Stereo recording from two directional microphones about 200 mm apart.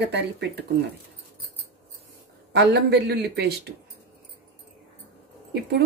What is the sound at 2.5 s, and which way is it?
Speech, 55° right (ahead or behind).